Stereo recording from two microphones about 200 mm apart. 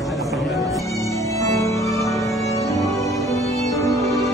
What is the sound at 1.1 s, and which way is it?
Music, 15° left (ahead or behind).